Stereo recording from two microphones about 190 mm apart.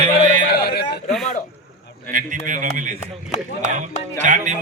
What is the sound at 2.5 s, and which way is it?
Speech, 40° right (ahead or behind).